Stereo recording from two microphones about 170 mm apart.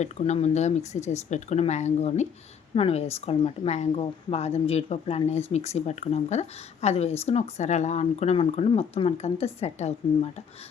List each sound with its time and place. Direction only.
0.0 s a woman's voice: 40° left (ahead or behind)